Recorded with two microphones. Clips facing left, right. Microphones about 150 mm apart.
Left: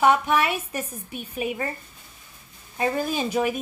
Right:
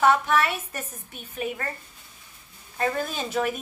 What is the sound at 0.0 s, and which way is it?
A woman's voice, 10° left (ahead or behind).